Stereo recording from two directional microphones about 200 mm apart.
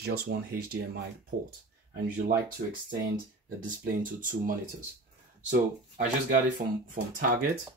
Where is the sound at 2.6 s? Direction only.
40° right (ahead or behind).